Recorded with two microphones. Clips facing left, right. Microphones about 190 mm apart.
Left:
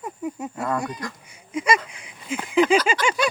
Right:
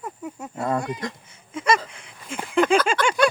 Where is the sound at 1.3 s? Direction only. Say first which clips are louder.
Even; 10° left (ahead or behind).